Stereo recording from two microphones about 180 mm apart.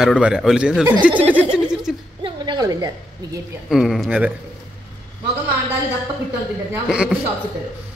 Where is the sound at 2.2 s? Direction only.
25° right (ahead or behind).